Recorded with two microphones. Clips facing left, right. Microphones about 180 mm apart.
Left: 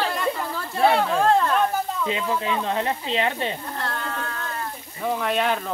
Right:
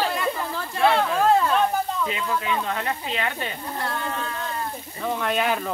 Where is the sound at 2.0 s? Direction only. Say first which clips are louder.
Left 2 dB; 25° left (ahead or behind).